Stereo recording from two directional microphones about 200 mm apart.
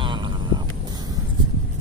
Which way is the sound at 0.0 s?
25° right (ahead or behind).